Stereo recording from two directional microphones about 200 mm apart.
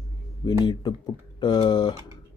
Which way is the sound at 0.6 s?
20° left (ahead or behind).